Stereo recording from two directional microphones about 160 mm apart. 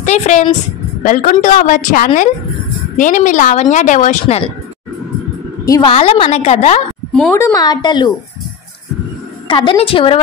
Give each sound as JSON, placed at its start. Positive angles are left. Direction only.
{"t": 0.0, "sound": "a woman's voice", "side_deg": 45}
{"t": 5.9, "sound": "a woman's voice", "side_deg": 35}
{"t": 7.3, "sound": "a woman's voice", "side_deg": 20}
{"t": 9.5, "sound": "a woman's voice", "side_deg": 30}